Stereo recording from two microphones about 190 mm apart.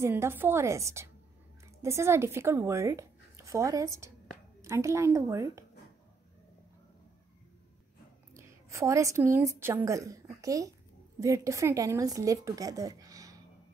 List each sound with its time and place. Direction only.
0.0 s a woman's voice: 15° right (ahead or behind)
8.3 s a woman's voice: 15° right (ahead or behind)